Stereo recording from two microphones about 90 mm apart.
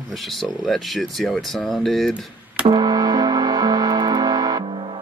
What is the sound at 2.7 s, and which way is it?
Music, 50° right (ahead or behind).